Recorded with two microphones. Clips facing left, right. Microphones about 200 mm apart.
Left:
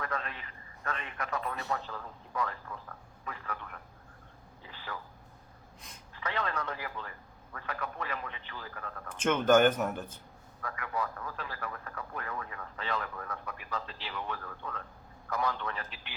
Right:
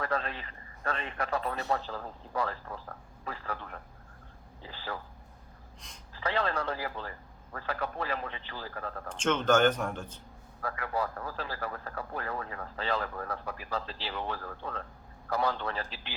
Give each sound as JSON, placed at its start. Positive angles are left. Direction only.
{"t": 0.0, "sound": "a man's voice", "side_deg": -30}
{"t": 6.1, "sound": "speech", "side_deg": -30}
{"t": 9.2, "sound": "speech", "side_deg": 10}
{"t": 10.6, "sound": "speech", "side_deg": -35}